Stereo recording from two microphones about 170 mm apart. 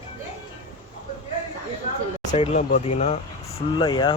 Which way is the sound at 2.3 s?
40° left (ahead or behind).